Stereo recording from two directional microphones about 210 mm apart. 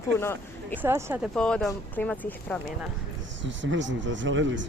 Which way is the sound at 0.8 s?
10° right (ahead or behind).